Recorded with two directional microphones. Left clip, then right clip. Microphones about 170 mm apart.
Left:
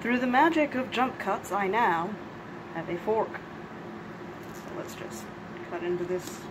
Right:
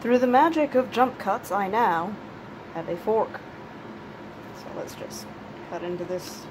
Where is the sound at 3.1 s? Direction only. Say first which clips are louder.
Right 4 dB; 15° right (ahead or behind).